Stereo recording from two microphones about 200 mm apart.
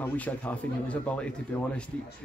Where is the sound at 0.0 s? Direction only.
5° left (ahead or behind).